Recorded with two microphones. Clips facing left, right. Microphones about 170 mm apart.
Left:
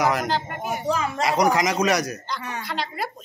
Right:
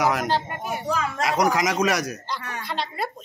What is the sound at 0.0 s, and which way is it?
Speech, 5° right (ahead or behind).